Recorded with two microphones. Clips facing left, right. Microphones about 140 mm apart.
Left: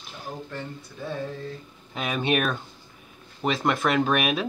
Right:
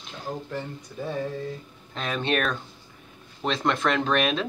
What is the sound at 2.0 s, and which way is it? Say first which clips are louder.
Speech: left 1 dB; 10° left (ahead or behind).